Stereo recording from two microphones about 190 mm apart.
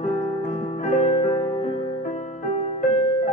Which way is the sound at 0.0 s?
45° left (ahead or behind).